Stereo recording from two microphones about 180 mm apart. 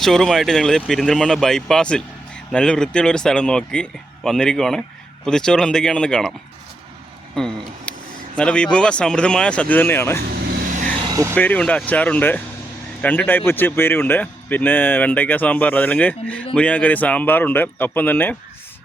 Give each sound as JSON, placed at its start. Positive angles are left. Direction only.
{"t": 0.0, "sound": "speech", "side_deg": 0}
{"t": 7.3, "sound": "speech", "side_deg": 5}
{"t": 11.1, "sound": "vehicle", "side_deg": -15}
{"t": 11.3, "sound": "speech", "side_deg": 10}